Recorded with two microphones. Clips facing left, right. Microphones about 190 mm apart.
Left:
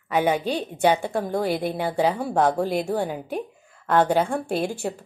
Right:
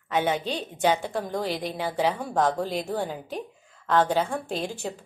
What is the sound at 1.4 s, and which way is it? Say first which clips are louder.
Speech: left 5 dB; 50° left (ahead or behind).